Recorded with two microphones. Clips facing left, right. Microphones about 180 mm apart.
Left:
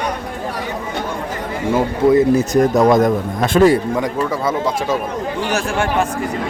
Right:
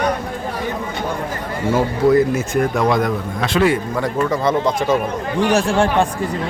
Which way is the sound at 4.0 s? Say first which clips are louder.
Right 1 dB; 5° left (ahead or behind).